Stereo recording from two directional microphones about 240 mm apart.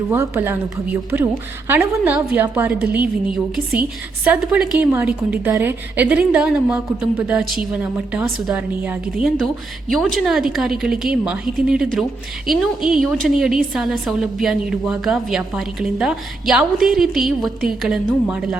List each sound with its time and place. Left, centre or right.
0.1 s a woman's voice: centre